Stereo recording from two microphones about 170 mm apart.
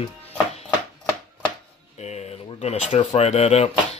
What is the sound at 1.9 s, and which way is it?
Speech, 40° left (ahead or behind).